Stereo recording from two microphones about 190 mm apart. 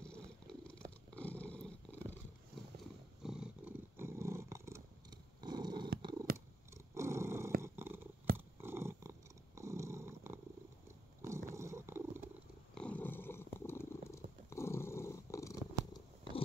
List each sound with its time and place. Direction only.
0.0 s purr: 5° left (ahead or behind)
3.2 s purr: 5° right (ahead or behind); by 5.9 s 20° right (ahead or behind)
6.3 s purr: 50° right (ahead or behind)
6.9 s dog: 15° right (ahead or behind)
7.6 s purr: 10° right (ahead or behind)
11.2 s a sound: 15° right (ahead or behind)
12.7 s purr: 5° left (ahead or behind)